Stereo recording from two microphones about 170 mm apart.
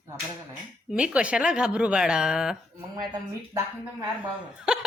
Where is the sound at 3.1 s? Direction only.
20° right (ahead or behind).